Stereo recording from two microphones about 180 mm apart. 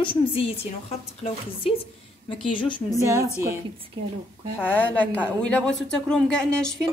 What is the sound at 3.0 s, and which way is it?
Speech, 15° right (ahead or behind).